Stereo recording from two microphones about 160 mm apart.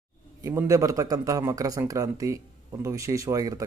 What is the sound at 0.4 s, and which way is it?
A man's voice, 20° right (ahead or behind).